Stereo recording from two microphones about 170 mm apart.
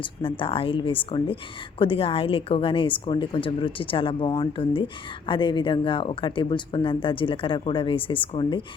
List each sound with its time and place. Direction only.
0.0 s a woman's voice: 30° left (ahead or behind)